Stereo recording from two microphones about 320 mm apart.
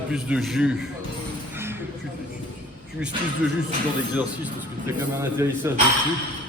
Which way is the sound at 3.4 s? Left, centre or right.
Centre.